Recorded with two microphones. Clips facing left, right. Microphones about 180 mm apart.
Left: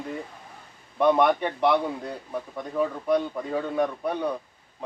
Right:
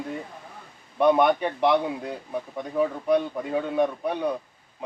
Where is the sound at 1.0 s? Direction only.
5° right (ahead or behind).